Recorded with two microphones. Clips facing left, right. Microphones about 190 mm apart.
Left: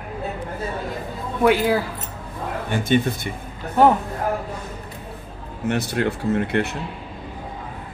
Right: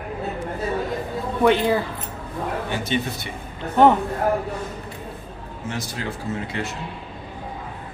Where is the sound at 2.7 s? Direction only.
50° left (ahead or behind).